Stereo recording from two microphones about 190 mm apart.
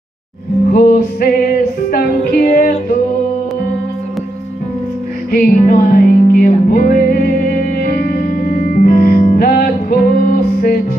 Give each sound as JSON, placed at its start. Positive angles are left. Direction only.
{"t": 0.7, "sound": "music", "side_deg": 50}
{"t": 5.3, "sound": "music", "side_deg": 50}